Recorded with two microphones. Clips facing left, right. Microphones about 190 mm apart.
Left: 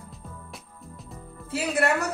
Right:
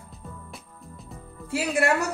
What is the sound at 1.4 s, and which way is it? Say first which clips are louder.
Speech: right 1 dB; 10° right (ahead or behind).